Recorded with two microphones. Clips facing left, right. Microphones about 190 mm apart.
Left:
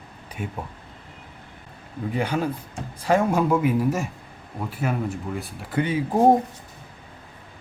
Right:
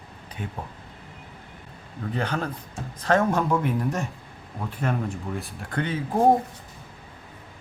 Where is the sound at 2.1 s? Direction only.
10° left (ahead or behind).